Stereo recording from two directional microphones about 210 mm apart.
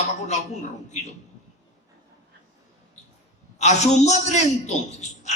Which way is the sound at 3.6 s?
30° left (ahead or behind).